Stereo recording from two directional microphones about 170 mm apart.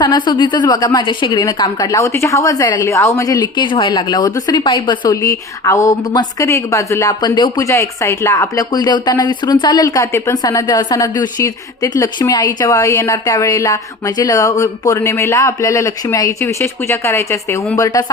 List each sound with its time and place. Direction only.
0.0 s a woman's voice: 25° left (ahead or behind)